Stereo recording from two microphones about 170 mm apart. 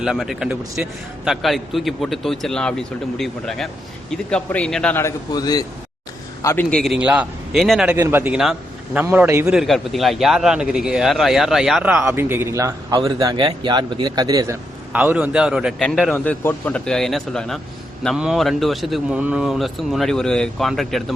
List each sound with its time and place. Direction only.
0.0 s a man's voice: centre (ahead or behind); by 5.6 s 25° left (ahead or behind)
6.4 s a man's voice: 10° left (ahead or behind); by 9.5 s 15° right (ahead or behind)
9.5 s a man's voice: centre (ahead or behind); by 14.5 s 20° right (ahead or behind)
14.9 s a man's voice: 10° right (ahead or behind)